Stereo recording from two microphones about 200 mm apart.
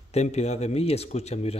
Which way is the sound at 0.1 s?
35° left (ahead or behind).